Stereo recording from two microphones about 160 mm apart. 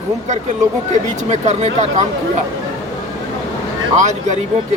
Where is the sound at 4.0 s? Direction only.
45° right (ahead or behind).